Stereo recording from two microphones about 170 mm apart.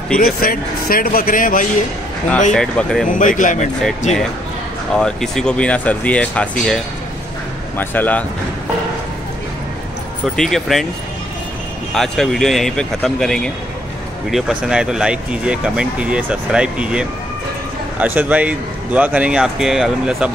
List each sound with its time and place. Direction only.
0.2 s speech: 60° left (ahead or behind)
2.5 s speech: 5° left (ahead or behind)
3.1 s speech: 50° left (ahead or behind)
4.9 s speech: 5° left (ahead or behind)
10.2 s speech: centre (ahead or behind)
11.9 s a man's voice: centre (ahead or behind)